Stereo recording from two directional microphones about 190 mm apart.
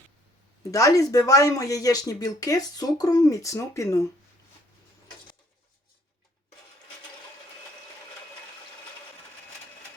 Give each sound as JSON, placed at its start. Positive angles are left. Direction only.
{"t": 0.6, "sound": "speech", "side_deg": 15}